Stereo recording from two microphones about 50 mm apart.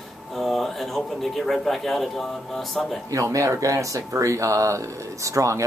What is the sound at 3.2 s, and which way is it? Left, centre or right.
Speech, right.